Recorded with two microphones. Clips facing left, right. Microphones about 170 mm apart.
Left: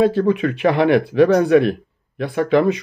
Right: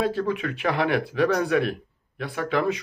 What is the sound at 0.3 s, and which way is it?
Speech, 70° left (ahead or behind).